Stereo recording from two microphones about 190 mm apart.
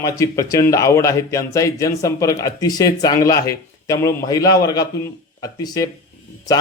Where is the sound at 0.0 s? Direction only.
15° left (ahead or behind).